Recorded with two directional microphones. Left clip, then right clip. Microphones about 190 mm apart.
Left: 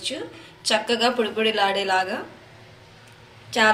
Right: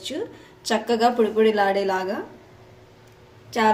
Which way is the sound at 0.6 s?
45° right (ahead or behind).